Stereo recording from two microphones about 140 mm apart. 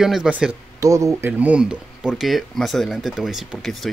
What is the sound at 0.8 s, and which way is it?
Speech, 25° right (ahead or behind).